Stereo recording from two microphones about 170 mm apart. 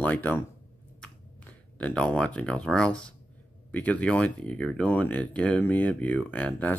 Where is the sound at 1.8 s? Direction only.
10° left (ahead or behind).